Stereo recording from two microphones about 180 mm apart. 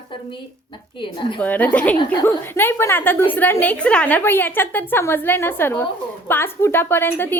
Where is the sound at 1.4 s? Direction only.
10° left (ahead or behind).